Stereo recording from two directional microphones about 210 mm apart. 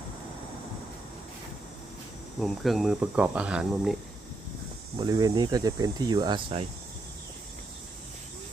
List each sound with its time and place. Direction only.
2.4 s speech: centre (ahead or behind)
4.9 s speech: 20° right (ahead or behind)